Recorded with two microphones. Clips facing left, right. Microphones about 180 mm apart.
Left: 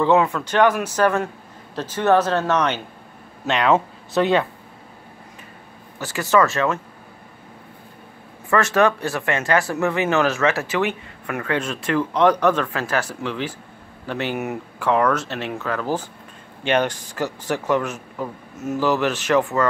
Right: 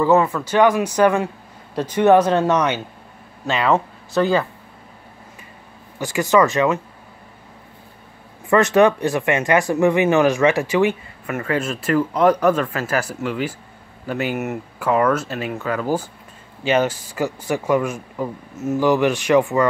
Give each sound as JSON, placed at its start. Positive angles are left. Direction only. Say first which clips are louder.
{"t": 0.0, "sound": "speech", "louder": "right 1 dB", "side_deg": -5}
{"t": 5.9, "sound": "speech", "louder": "right 2 dB", "side_deg": -15}
{"t": 8.5, "sound": "speech", "louder": "right 4 dB", "side_deg": -20}